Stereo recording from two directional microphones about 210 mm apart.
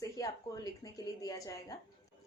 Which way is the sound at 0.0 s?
15° left (ahead or behind).